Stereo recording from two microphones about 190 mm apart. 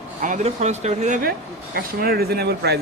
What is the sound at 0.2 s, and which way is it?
A woman's voice, 40° right (ahead or behind).